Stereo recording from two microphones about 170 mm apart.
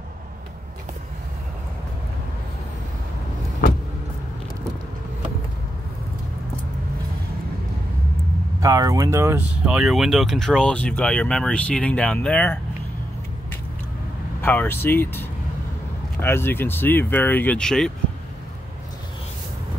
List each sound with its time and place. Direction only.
8.5 s speech: 20° right (ahead or behind)
9.7 s speech: 5° right (ahead or behind)
14.4 s speech: 10° left (ahead or behind)